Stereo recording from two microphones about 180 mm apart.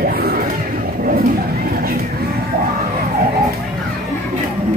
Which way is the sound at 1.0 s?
55° right (ahead or behind).